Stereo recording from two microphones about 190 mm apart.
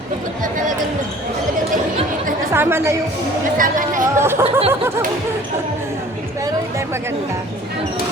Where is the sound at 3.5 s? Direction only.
45° right (ahead or behind).